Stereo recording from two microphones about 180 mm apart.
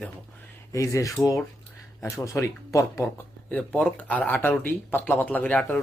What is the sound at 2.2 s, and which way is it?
Speech, 20° left (ahead or behind).